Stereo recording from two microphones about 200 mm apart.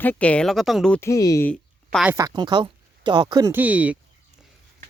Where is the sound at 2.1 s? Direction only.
15° right (ahead or behind).